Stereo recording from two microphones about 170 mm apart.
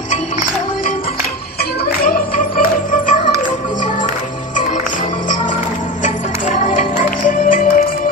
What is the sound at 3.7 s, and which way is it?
Music, 30° left (ahead or behind).